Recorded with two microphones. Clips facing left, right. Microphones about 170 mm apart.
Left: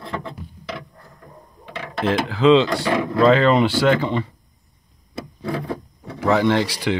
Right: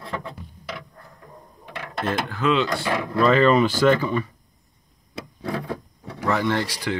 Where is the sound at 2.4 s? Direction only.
30° left (ahead or behind).